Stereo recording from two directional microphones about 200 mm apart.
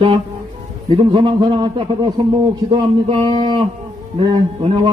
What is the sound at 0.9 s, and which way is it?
A man's voice, 25° right (ahead or behind).